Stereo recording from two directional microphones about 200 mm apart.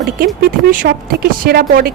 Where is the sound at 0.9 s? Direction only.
50° right (ahead or behind).